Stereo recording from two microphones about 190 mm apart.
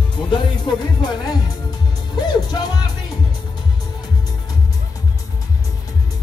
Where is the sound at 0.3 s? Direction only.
20° left (ahead or behind).